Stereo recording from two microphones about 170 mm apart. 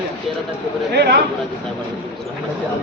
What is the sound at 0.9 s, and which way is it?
Speech, 75° right (ahead or behind).